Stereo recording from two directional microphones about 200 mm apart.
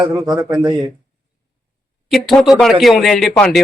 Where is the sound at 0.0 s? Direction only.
20° right (ahead or behind).